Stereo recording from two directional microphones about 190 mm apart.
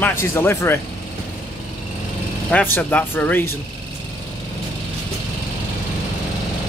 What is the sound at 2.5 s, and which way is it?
Speech, 10° left (ahead or behind).